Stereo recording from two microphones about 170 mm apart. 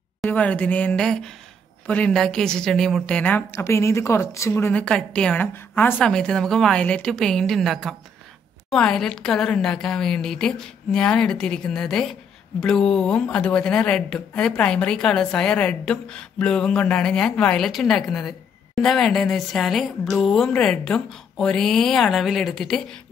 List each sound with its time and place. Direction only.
0.2 s a woman's voice: 10° left (ahead or behind)